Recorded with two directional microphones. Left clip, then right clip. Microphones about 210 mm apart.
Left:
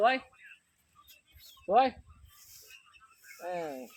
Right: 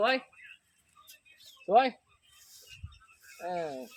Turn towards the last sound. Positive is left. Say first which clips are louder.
# right 2 dB
turn(degrees=-60)  # may be behind; listen again after turning